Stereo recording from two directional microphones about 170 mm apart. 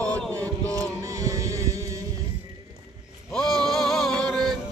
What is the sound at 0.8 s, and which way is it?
Music, 20° right (ahead or behind).